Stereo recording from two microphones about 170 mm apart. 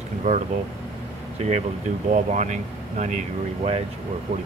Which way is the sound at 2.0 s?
45° right (ahead or behind).